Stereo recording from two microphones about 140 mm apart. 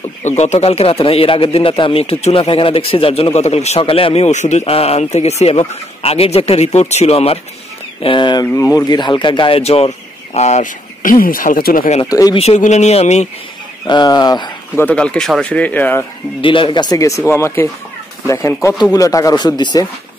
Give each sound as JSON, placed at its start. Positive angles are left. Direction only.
{"t": 0.4, "sound": "speech", "side_deg": 50}
{"t": 8.0, "sound": "speech", "side_deg": 35}
{"t": 12.1, "sound": "speech", "side_deg": 25}
{"t": 12.4, "sound": "speech", "side_deg": 55}
{"t": 13.8, "sound": "speech", "side_deg": 30}
{"t": 14.8, "sound": "speech", "side_deg": 10}
{"t": 16.3, "sound": "speech", "side_deg": 40}